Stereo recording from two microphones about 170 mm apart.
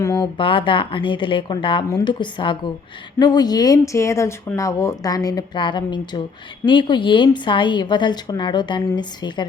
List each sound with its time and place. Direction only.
0.0 s speech: 20° left (ahead or behind)
0.3 s speech: 30° left (ahead or behind)